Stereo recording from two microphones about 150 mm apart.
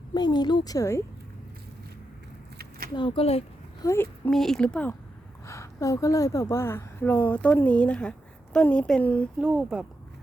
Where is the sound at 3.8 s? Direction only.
15° left (ahead or behind).